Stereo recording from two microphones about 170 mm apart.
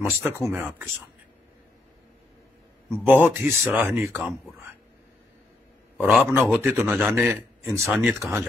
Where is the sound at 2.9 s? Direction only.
10° right (ahead or behind).